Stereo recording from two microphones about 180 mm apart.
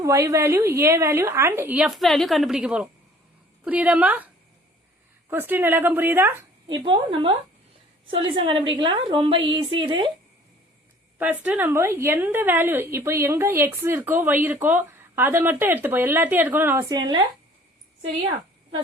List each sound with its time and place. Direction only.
0.0 s a woman's voice: 15° right (ahead or behind)
5.3 s a woman's voice: 10° right (ahead or behind)
6.7 s a woman's voice: 30° right (ahead or behind)
11.2 s a woman's voice: 10° right (ahead or behind)
16.9 s a woman's voice: 25° right (ahead or behind)